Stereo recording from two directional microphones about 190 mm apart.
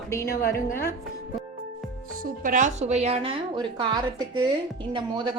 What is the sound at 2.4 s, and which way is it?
A woman's voice, 40° right (ahead or behind).